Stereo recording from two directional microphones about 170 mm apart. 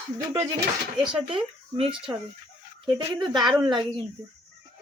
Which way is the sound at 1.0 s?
30° right (ahead or behind).